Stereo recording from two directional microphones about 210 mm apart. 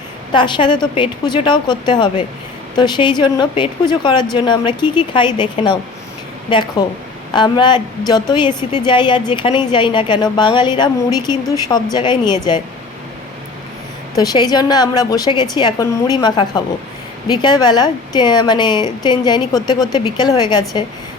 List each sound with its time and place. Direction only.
0.3 s a woman's voice: 20° left (ahead or behind)
14.2 s a woman's voice: 20° left (ahead or behind)